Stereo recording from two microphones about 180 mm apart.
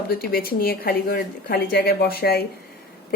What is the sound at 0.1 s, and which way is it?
A woman's voice, 55° left (ahead or behind).